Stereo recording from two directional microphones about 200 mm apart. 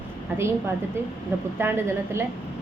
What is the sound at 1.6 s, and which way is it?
Speech, 10° right (ahead or behind).